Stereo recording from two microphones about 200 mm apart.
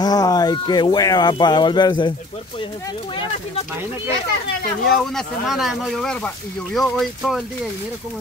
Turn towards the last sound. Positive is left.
turn(degrees=0)  # may be behind; listen again after turning